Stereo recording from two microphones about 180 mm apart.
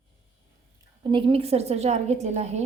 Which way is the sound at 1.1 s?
25° right (ahead or behind).